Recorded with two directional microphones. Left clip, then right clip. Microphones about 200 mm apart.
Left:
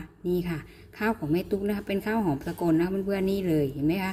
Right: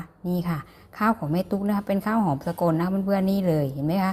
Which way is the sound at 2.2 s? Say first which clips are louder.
Right 3 dB; 5° left (ahead or behind).